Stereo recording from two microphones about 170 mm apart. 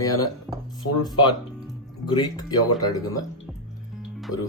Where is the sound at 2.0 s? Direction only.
25° left (ahead or behind).